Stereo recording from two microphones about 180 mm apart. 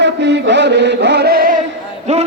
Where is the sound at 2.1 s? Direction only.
40° right (ahead or behind).